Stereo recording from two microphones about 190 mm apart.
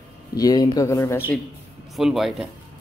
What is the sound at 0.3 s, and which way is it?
Speech, 20° left (ahead or behind).